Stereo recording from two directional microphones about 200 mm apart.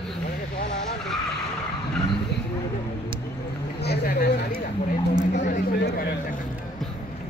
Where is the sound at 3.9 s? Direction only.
50° left (ahead or behind).